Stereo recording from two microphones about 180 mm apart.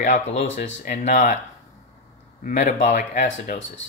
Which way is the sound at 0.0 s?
45° left (ahead or behind).